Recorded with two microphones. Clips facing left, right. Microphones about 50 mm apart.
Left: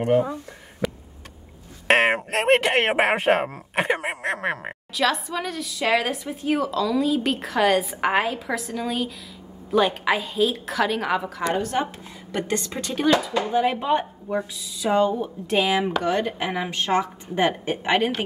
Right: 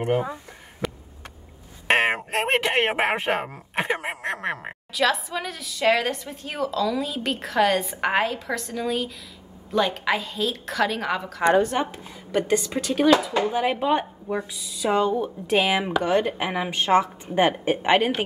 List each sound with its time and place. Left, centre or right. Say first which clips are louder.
0.0 s speech: left 4 dB; right
0.8 s a sound: left 3 dB; centre
1.9 s a woman's voice: left 2 dB; centre
11.7 s a woman's voice: left 1 dB; centre